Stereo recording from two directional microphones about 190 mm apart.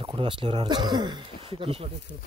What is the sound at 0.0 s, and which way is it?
Speech, 25° right (ahead or behind).